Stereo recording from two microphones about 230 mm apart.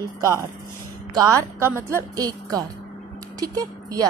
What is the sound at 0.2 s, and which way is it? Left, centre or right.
Speech, centre.